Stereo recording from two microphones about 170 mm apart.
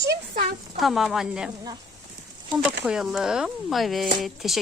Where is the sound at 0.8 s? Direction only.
Centre (ahead or behind).